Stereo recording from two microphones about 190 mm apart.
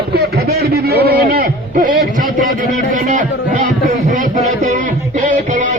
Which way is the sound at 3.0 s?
40° right (ahead or behind).